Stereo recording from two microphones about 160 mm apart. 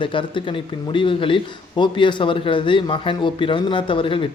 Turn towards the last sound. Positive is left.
turn(degrees=35)  # may be behind; listen again after turning